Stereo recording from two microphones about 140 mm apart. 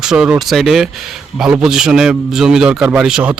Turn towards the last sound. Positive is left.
turn(degrees=-5)  # may be behind; listen again after turning